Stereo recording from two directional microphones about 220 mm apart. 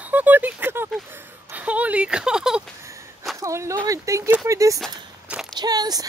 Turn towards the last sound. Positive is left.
turn(degrees=-15)  # may be behind; listen again after turning